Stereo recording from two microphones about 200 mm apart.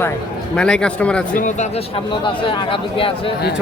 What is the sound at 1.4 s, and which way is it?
Speech, 35° left (ahead or behind).